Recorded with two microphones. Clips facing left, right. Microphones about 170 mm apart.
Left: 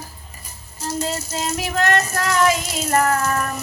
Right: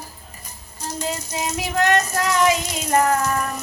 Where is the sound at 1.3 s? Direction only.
15° right (ahead or behind).